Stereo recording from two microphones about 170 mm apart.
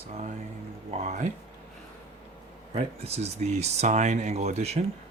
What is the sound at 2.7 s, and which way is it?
Speech, 40° right (ahead or behind).